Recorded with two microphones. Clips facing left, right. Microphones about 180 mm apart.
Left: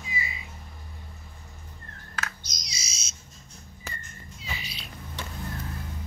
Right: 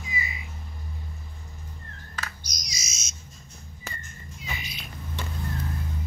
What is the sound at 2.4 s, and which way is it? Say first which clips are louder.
Bird: right 2 dB; 25° left (ahead or behind).